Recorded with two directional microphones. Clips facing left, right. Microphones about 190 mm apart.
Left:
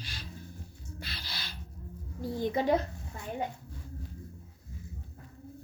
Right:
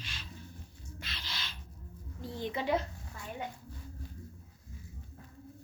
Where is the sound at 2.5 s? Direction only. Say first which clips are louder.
Left 4 dB; 45° left (ahead or behind).